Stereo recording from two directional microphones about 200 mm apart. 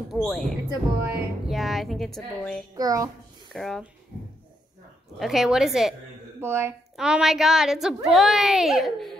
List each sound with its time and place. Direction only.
0.1 s a woman's voice: centre (ahead or behind)
0.7 s a woman's voice: 10° right (ahead or behind)
2.7 s a child's voice: 15° right (ahead or behind)
3.5 s a woman's voice: centre (ahead or behind)
5.2 s a woman's voice: centre (ahead or behind)